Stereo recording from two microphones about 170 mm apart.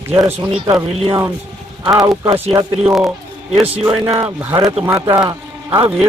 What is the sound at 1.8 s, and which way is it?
Speech, 20° right (ahead or behind).